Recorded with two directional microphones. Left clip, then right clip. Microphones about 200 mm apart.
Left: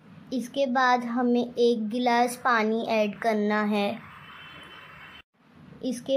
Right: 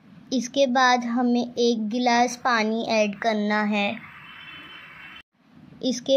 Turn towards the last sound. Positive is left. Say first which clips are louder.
# right 6 dB
turn(degrees=-20)  # may be behind; listen again after turning